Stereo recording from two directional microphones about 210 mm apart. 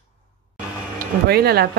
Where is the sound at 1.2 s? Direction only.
50° right (ahead or behind).